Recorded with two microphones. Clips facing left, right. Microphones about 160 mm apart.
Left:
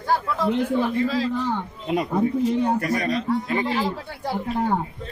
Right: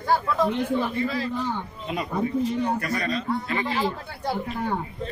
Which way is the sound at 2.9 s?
20° left (ahead or behind).